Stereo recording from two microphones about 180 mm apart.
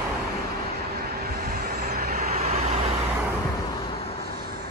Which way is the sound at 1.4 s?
55° right (ahead or behind).